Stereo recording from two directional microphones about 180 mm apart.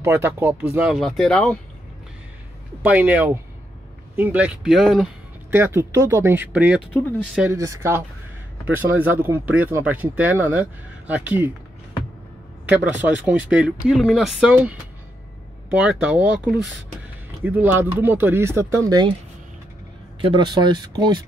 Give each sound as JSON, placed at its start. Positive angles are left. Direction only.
{"t": 0.0, "sound": "speech", "side_deg": -10}
{"t": 2.8, "sound": "speech", "side_deg": -10}
{"t": 7.5, "sound": "speech", "side_deg": -15}
{"t": 12.6, "sound": "speech", "side_deg": -10}
{"t": 20.2, "sound": "speech", "side_deg": -25}